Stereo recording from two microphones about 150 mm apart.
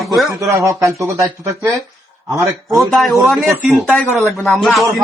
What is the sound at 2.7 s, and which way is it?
Speech, centre (ahead or behind).